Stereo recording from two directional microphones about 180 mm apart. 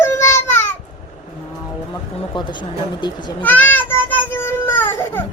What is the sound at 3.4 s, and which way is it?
Child singing, 10° left (ahead or behind).